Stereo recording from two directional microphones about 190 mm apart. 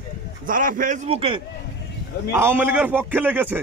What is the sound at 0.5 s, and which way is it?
Speech, 45° right (ahead or behind).